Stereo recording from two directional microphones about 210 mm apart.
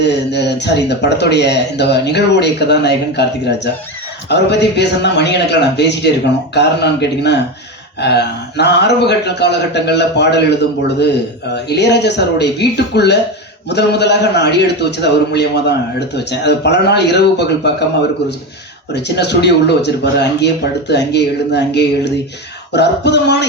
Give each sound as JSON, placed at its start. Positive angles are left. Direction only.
{"t": 0.0, "sound": "a man's voice", "side_deg": 55}
{"t": 11.5, "sound": "a man's voice", "side_deg": 55}
{"t": 18.9, "sound": "a man's voice", "side_deg": 55}